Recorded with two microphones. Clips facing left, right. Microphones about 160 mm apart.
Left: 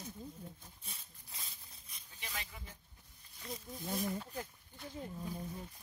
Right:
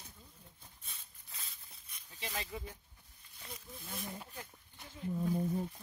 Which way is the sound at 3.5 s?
40° left (ahead or behind).